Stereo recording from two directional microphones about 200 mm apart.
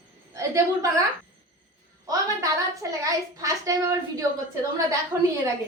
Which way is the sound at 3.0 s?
15° right (ahead or behind).